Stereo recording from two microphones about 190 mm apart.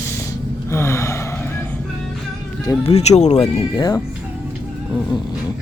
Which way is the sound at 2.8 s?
35° left (ahead or behind).